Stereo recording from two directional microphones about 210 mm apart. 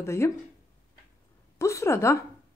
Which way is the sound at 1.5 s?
15° left (ahead or behind).